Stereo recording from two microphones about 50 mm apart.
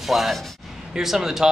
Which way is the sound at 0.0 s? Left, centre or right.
Centre.